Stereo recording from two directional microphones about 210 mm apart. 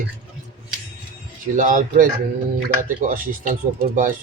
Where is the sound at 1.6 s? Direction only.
40° right (ahead or behind).